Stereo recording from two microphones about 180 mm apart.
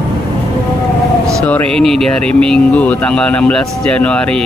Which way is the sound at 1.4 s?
5° left (ahead or behind).